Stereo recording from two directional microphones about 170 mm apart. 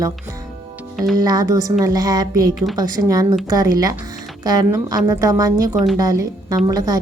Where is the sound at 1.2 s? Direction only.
20° right (ahead or behind).